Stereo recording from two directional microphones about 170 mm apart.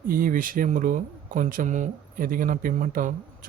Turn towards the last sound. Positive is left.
turn(degrees=-50)  # may be behind; listen again after turning